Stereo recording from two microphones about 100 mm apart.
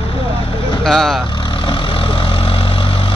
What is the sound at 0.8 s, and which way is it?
Speech, centre (ahead or behind).